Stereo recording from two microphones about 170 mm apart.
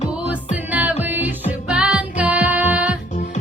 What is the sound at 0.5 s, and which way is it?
Music, 10° right (ahead or behind).